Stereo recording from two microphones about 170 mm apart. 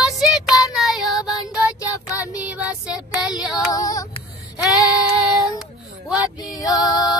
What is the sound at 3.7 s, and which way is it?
Music, 20° left (ahead or behind).